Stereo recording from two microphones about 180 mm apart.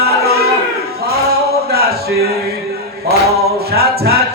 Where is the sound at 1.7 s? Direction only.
60° right (ahead or behind).